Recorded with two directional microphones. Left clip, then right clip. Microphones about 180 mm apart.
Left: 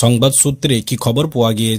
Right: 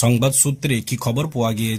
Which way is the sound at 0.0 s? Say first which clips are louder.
Left 5 dB; 25° left (ahead or behind).